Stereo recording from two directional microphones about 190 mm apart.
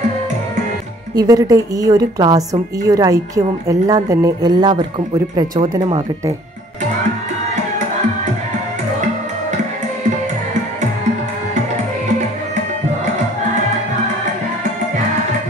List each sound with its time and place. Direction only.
1.1 s a woman's voice: 20° right (ahead or behind)
5.9 s a woman's voice: 25° right (ahead or behind)